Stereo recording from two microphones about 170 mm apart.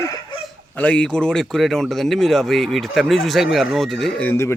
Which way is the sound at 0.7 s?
10° left (ahead or behind).